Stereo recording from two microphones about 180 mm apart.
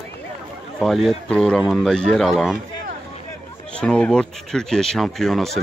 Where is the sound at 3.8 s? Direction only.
5° left (ahead or behind).